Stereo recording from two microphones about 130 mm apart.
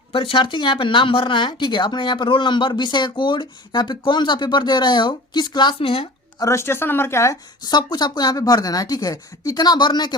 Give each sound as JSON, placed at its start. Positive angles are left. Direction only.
{"t": 0.1, "sound": "speech", "side_deg": 40}
{"t": 6.4, "sound": "speech", "side_deg": 20}